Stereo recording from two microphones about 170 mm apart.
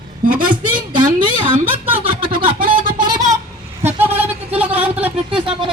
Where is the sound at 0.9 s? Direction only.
30° right (ahead or behind).